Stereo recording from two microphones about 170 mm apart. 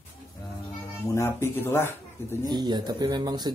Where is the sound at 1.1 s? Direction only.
15° left (ahead or behind).